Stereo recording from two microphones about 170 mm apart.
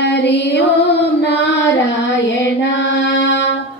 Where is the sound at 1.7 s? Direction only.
90° left.